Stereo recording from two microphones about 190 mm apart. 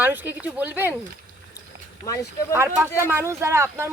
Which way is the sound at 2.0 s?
15° left (ahead or behind).